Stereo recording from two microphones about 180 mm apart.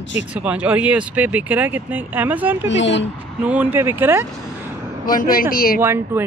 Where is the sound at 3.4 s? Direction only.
10° right (ahead or behind).